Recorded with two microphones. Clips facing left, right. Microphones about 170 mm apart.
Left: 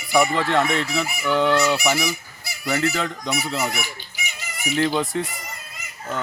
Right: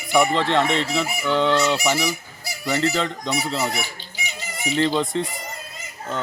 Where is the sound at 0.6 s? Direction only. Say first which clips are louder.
Right 1 dB; 10° left (ahead or behind).